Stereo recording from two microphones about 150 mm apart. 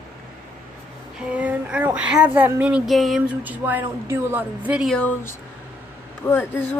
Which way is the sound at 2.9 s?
Centre (ahead or behind).